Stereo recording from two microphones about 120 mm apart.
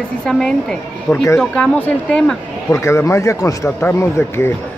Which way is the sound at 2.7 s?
20° left (ahead or behind).